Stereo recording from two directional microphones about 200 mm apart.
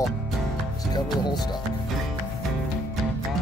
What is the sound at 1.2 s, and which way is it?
Speech, 20° left (ahead or behind).